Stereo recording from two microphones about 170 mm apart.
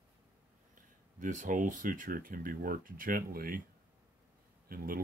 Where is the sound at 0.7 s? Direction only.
50° right (ahead or behind).